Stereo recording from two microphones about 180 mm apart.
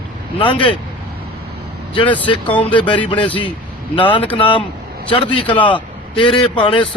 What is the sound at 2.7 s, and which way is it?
Speech, 25° left (ahead or behind).